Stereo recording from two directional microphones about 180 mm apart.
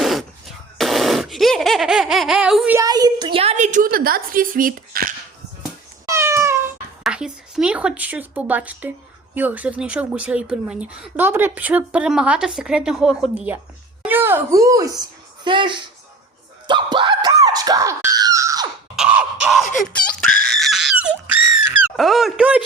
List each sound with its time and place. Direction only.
0.0 s a sound: centre (ahead or behind)
0.8 s laughter: centre (ahead or behind)
2.7 s a woman's voice: 20° right (ahead or behind); by 5.1 s 50° right (ahead or behind)
6.1 s meow: 15° right (ahead or behind)
7.0 s speech: 5° right (ahead or behind); by 17.3 s 25° right (ahead or behind)
17.4 s screaming: 20° right (ahead or behind)
18.9 s scratching: 5° right (ahead or behind)
19.9 s a sound: 5° left (ahead or behind)
21.9 s speech: centre (ahead or behind)